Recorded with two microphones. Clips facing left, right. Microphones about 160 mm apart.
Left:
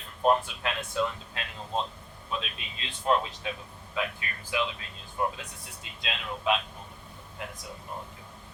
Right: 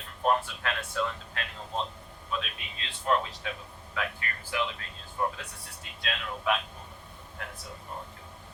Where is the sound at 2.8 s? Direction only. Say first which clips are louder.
Left 2 dB; 20° left (ahead or behind).